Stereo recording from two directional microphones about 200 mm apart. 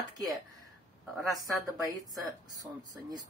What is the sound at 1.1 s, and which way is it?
Speech, centre (ahead or behind).